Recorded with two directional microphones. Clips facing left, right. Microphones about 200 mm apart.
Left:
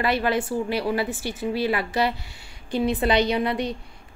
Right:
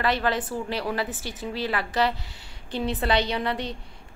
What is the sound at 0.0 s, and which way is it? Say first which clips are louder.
A woman's voice: left 2 dB; 10° left (ahead or behind).